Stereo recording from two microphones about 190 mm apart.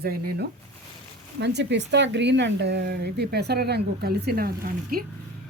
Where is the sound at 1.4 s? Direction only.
65° right (ahead or behind).